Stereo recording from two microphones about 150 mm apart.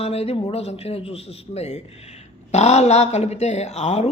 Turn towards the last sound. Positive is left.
turn(degrees=50)  # may be behind; listen again after turning